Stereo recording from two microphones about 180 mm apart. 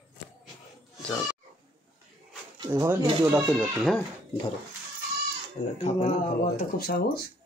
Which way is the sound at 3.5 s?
5° right (ahead or behind).